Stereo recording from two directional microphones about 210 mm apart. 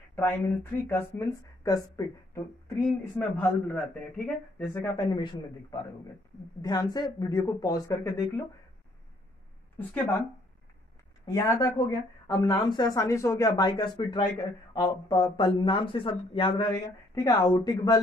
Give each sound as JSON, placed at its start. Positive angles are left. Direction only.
{"t": 0.1, "sound": "speech", "side_deg": 10}
{"t": 9.8, "sound": "speech", "side_deg": 10}
{"t": 11.3, "sound": "speech", "side_deg": 15}